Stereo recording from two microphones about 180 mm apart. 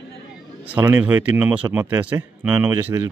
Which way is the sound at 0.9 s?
10° right (ahead or behind).